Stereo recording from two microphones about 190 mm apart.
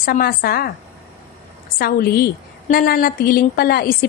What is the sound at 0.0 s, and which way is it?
Speech, 50° left (ahead or behind).